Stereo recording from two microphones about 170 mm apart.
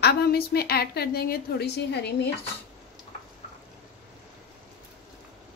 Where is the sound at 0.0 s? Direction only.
70° left (ahead or behind).